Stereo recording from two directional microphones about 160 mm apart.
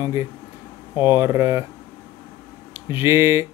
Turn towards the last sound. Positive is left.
turn(degrees=-15)  # may be behind; listen again after turning